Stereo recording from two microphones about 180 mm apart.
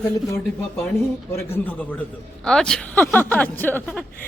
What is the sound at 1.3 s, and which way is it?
Speech, 10° left (ahead or behind).